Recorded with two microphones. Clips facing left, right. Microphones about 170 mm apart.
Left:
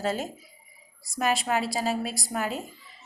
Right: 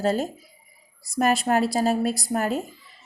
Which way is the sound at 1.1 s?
50° right (ahead or behind).